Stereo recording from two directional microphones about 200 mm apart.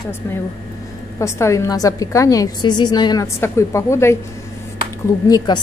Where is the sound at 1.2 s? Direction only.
15° left (ahead or behind).